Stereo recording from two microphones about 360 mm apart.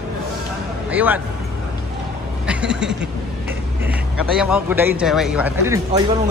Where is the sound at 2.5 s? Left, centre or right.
Centre.